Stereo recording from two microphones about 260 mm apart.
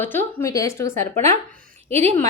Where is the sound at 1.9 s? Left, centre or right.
Right.